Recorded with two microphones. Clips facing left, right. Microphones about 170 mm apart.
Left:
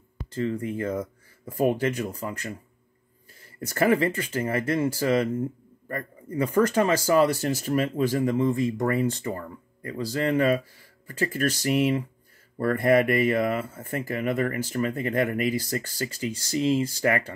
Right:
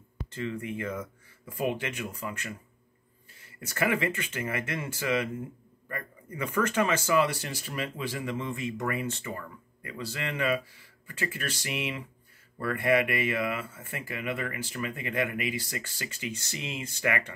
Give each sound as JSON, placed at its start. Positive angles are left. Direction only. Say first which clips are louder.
{"t": 0.3, "sound": "speech", "louder": "left 6 dB", "side_deg": 35}